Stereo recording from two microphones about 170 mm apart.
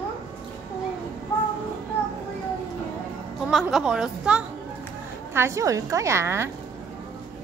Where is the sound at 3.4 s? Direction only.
5° right (ahead or behind).